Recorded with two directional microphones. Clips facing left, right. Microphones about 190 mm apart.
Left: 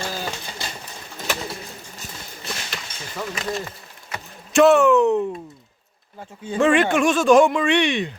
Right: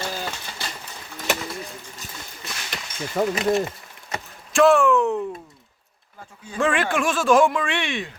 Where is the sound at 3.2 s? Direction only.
50° right (ahead or behind).